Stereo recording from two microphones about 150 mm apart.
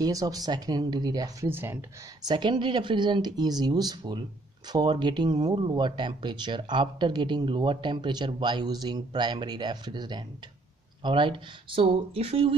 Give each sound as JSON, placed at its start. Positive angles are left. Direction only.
{"t": 0.0, "sound": "speech", "side_deg": -25}
{"t": 2.2, "sound": "speech", "side_deg": -30}